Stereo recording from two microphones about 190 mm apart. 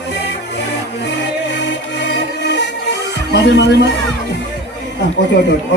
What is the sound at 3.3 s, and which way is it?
Speech, 65° left (ahead or behind).